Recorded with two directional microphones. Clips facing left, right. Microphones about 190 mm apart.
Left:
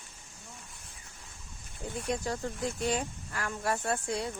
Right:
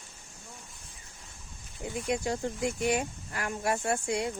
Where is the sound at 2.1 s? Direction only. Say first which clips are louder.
Right 3 dB; 15° right (ahead or behind).